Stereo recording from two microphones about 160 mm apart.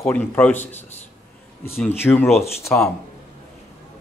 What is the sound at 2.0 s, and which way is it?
Speech, 15° left (ahead or behind).